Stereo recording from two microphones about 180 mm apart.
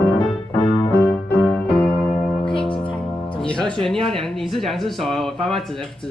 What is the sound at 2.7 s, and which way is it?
Music, 30° left (ahead or behind).